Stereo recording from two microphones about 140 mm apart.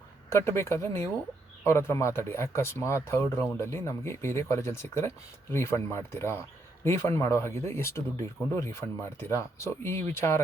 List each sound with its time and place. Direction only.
0.3 s speech: 20° left (ahead or behind)